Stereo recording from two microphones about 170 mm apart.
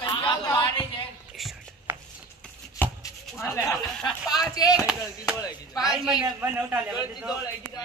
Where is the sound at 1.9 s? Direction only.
10° right (ahead or behind).